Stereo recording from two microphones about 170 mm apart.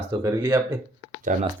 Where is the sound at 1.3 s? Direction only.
50° right (ahead or behind).